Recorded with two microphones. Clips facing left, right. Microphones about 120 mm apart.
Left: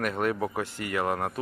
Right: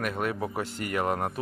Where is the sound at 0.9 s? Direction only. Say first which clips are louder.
Even; 20° right (ahead or behind).